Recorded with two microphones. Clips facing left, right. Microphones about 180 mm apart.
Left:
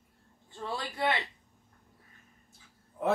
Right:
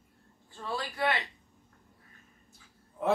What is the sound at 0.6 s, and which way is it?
Speech, 20° left (ahead or behind).